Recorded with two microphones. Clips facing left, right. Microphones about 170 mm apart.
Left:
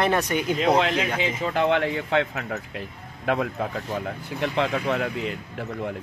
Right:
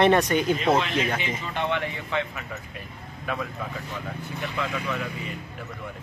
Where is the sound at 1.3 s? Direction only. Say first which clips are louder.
Left 6 dB; 90° left.